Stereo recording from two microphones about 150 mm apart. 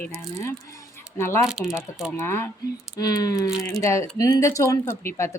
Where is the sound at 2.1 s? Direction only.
20° left (ahead or behind).